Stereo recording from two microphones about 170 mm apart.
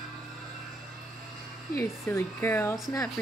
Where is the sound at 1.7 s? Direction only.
15° left (ahead or behind).